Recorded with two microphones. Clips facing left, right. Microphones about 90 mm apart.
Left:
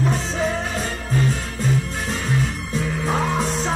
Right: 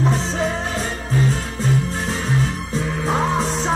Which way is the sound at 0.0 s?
25° right (ahead or behind).